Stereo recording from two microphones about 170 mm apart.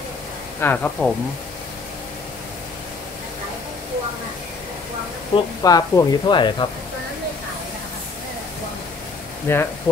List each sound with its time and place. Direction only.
0.6 s speech: 10° left (ahead or behind)
5.3 s speech: 20° left (ahead or behind)
9.5 s speech: 15° left (ahead or behind)